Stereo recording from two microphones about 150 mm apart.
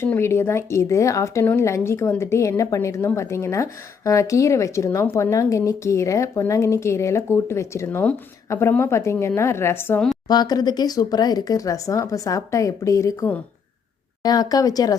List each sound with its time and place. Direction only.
0.0 s speech: 15° left (ahead or behind)
10.2 s speech: 25° left (ahead or behind)